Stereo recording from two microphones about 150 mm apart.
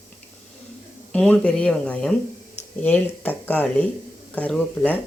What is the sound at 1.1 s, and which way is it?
Speech, 5° left (ahead or behind).